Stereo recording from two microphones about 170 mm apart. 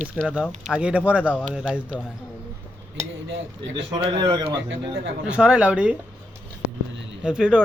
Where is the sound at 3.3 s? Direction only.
90° right.